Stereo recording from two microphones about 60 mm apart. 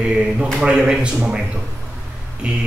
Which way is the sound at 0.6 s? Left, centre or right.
Centre.